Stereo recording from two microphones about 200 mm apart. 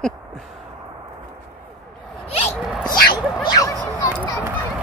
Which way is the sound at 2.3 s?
30° left (ahead or behind).